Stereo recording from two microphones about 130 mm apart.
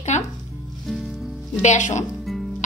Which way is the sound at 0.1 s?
60° left (ahead or behind).